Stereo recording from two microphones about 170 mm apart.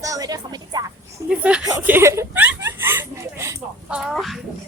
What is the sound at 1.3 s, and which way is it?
Speech, 5° right (ahead or behind).